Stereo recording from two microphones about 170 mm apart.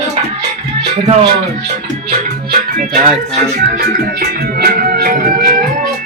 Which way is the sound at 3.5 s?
55° right (ahead or behind).